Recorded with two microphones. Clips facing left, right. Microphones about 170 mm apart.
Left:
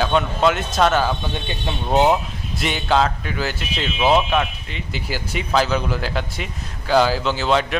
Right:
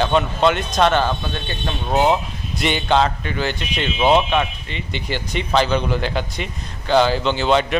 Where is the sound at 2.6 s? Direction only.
Centre (ahead or behind).